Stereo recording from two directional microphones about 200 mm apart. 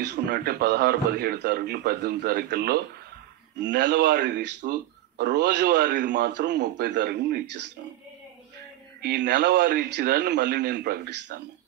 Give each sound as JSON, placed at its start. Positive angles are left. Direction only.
{"t": 0.1, "sound": "a man's voice", "side_deg": -60}
{"t": 9.0, "sound": "speech", "side_deg": -55}